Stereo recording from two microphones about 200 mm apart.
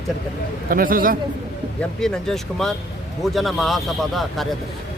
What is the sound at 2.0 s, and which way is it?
Speech, centre (ahead or behind).